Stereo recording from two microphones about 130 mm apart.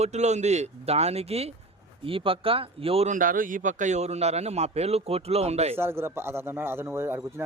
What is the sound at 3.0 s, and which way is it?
Speech, 90° right.